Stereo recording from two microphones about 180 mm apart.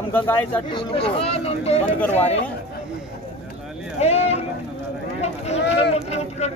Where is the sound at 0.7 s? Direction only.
30° left (ahead or behind).